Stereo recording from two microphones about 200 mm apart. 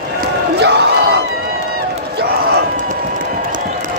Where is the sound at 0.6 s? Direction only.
55° right (ahead or behind).